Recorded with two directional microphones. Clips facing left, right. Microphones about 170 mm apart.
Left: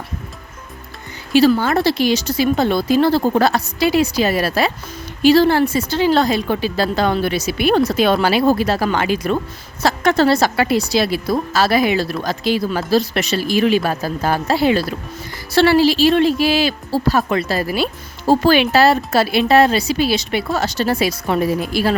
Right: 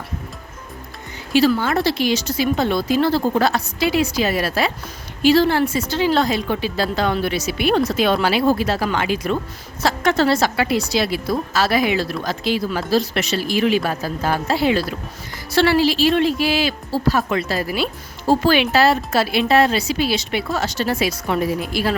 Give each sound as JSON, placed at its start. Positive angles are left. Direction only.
{"t": 1.3, "sound": "a woman's voice", "side_deg": 40}